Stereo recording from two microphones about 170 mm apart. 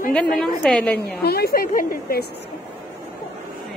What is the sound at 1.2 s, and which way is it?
A woman's voice, 65° left (ahead or behind).